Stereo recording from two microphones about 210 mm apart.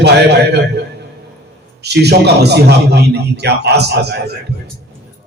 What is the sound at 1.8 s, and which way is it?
A man's voice, 50° right (ahead or behind).